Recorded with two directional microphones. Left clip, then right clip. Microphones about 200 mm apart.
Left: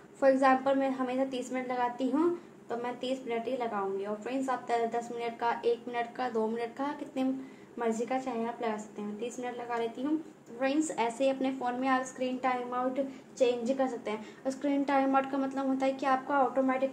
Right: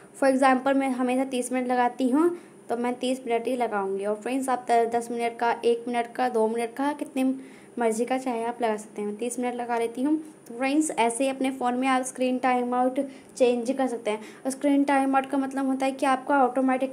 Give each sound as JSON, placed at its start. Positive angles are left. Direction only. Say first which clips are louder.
{"t": 0.2, "sound": "a woman's voice", "louder": "right 4 dB", "side_deg": -50}